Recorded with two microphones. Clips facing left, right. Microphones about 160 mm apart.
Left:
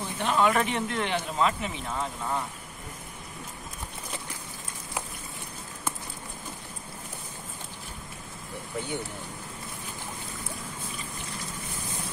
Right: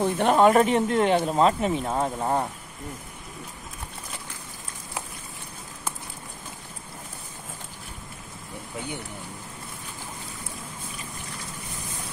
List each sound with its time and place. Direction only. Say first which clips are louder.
0.0 s speech: right 7 dB; 50° right (ahead or behind)